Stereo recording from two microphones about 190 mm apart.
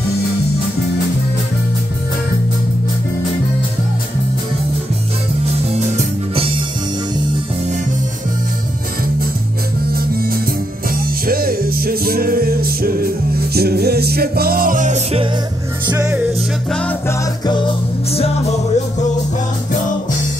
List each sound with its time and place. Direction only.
5.4 s music: 35° right (ahead or behind)
9.9 s music: 50° right (ahead or behind)
15.9 s music: 10° right (ahead or behind)